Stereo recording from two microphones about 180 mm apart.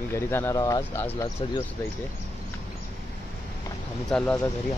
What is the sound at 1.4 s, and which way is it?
Speech, 30° left (ahead or behind).